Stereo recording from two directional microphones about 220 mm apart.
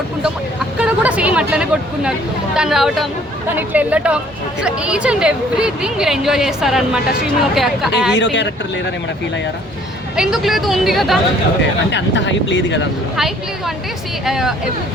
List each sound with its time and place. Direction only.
0.8 s a woman's voice: 5° right (ahead or behind)
8.1 s speech: 55° left (ahead or behind)
10.2 s a woman's voice: centre (ahead or behind)
11.9 s speech: 55° left (ahead or behind)
13.1 s a woman's voice: centre (ahead or behind)